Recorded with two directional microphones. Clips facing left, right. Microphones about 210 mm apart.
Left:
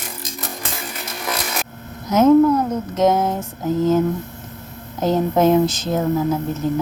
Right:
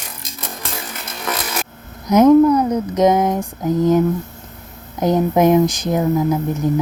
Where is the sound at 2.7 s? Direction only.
15° right (ahead or behind).